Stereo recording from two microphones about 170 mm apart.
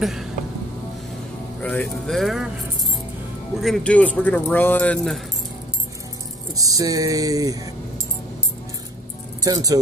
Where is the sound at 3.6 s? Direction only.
5° left (ahead or behind).